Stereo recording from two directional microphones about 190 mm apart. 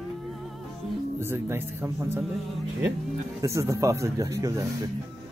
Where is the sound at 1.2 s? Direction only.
10° right (ahead or behind).